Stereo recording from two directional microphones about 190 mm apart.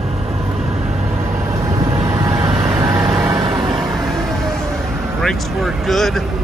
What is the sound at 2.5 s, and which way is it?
Vehicle, 5° right (ahead or behind).